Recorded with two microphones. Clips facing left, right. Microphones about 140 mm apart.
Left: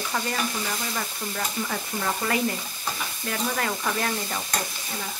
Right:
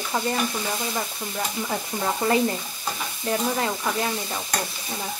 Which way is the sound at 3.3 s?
20° right (ahead or behind).